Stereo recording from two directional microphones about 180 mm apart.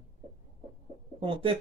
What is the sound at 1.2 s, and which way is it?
Speech, 30° right (ahead or behind).